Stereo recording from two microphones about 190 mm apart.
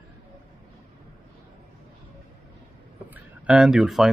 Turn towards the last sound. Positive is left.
turn(degrees=0)  # may be behind; listen again after turning